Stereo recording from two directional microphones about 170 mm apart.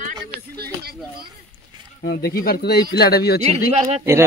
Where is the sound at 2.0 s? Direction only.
65° left (ahead or behind).